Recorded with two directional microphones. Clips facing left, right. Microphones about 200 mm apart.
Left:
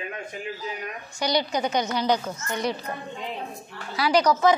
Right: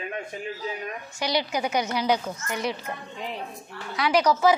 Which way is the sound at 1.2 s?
5° right (ahead or behind).